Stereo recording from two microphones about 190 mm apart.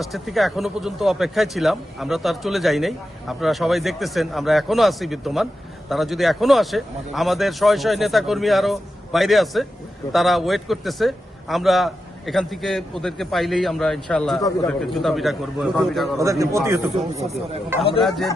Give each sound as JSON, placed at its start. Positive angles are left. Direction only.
{"t": 0.0, "sound": "speech", "side_deg": 0}
{"t": 16.2, "sound": "a man's voice", "side_deg": -15}
{"t": 17.2, "sound": "speech", "side_deg": -35}